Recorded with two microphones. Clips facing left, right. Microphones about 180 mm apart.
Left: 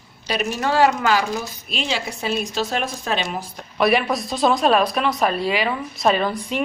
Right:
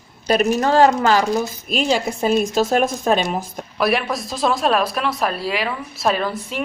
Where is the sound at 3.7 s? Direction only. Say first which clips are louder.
Left 1 dB; centre (ahead or behind).